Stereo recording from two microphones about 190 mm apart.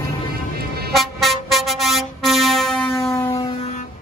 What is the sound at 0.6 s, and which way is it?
Vehicle, 55° right (ahead or behind).